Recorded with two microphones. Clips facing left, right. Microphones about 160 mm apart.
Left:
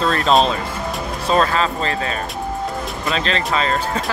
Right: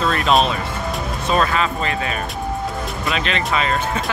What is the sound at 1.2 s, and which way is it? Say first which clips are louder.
Speech: left 2 dB; 30° left (ahead or behind).